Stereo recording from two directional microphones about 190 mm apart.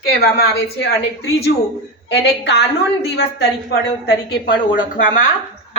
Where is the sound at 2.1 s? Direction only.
60° left (ahead or behind).